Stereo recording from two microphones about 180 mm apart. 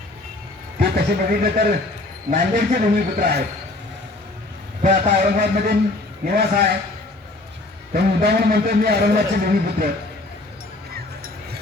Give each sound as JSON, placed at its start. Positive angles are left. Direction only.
{"t": 0.8, "sound": "speech", "side_deg": -55}
{"t": 4.8, "sound": "a man's voice", "side_deg": -45}
{"t": 7.9, "sound": "a man's voice", "side_deg": -60}
{"t": 10.9, "sound": "music", "side_deg": -60}